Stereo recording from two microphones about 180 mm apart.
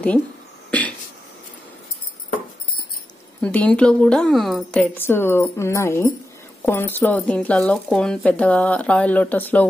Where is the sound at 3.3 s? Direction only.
5° left (ahead or behind).